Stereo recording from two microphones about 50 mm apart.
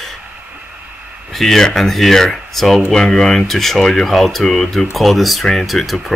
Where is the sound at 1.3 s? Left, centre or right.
Centre.